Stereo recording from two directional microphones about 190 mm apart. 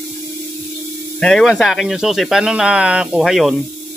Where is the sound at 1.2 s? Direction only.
5° left (ahead or behind).